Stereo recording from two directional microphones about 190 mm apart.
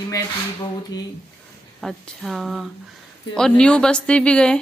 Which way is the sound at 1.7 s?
Centre (ahead or behind).